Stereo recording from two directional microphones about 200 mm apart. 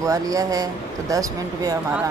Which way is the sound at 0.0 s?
15° right (ahead or behind).